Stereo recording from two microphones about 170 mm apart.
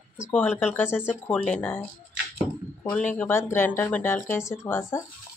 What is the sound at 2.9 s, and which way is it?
Speech, 10° left (ahead or behind).